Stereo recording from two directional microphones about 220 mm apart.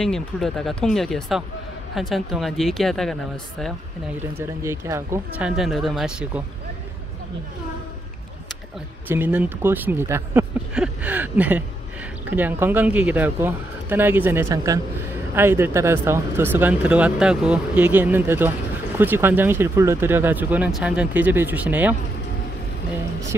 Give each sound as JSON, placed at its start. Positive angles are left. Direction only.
{"t": 0.0, "sound": "speech", "side_deg": 0}
{"t": 4.4, "sound": "speech", "side_deg": -10}
{"t": 5.6, "sound": "speech", "side_deg": 0}
{"t": 9.0, "sound": "speech", "side_deg": -10}